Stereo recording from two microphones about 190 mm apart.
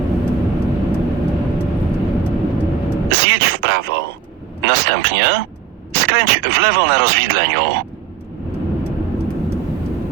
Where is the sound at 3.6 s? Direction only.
55° right (ahead or behind).